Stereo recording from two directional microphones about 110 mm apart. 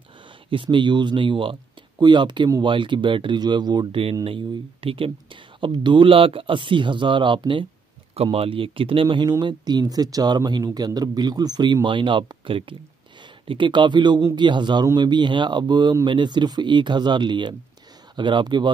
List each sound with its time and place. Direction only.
0.5 s speech: 50° right (ahead or behind)
4.0 s speech: 55° right (ahead or behind)
8.2 s speech: 60° right (ahead or behind); by 18.7 s 45° right (ahead or behind)